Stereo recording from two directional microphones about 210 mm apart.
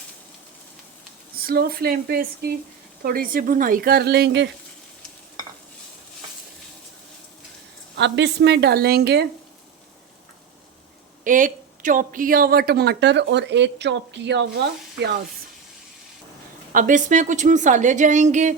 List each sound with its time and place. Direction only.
1.4 s a woman's voice: 45° right (ahead or behind)
7.9 s a woman's voice: 55° right (ahead or behind)
11.2 s a woman's voice: 40° right (ahead or behind)
16.7 s a woman's voice: 40° right (ahead or behind)